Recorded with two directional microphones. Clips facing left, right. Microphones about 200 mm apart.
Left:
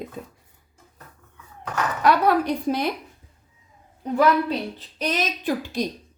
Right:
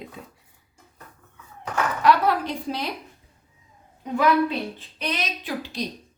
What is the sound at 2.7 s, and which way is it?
Speech, 50° left (ahead or behind).